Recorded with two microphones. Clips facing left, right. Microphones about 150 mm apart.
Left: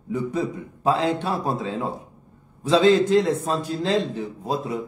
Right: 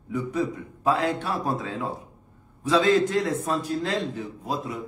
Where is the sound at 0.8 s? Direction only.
25° left (ahead or behind).